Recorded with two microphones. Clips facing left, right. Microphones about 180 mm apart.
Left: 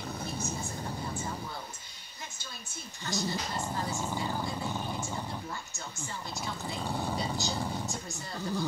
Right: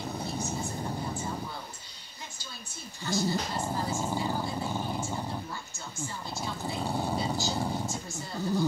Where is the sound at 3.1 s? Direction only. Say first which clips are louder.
Right 4 dB; 25° right (ahead or behind).